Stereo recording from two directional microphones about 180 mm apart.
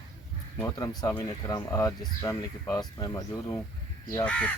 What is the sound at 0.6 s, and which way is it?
Speech, 20° left (ahead or behind).